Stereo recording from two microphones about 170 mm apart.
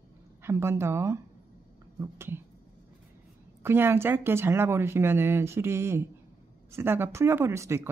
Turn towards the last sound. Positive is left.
turn(degrees=-15)  # may be behind; listen again after turning